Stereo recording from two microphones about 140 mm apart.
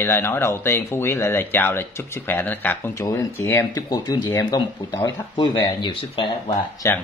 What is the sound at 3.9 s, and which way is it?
Speech, 30° left (ahead or behind).